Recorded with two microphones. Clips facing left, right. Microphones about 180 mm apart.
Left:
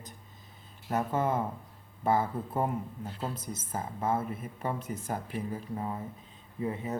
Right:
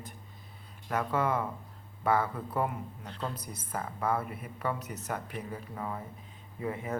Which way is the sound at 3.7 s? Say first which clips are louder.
Even; 25° left (ahead or behind).